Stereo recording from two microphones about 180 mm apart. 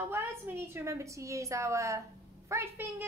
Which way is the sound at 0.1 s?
10° right (ahead or behind).